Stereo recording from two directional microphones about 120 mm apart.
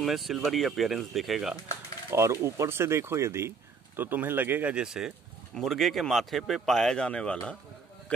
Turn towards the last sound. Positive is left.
turn(degrees=10)  # may be behind; listen again after turning